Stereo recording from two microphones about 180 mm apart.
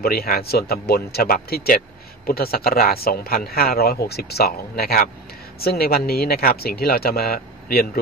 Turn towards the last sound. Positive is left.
turn(degrees=55)  # may be behind; listen again after turning